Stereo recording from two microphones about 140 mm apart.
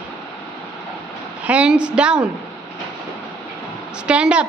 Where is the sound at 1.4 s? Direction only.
10° right (ahead or behind).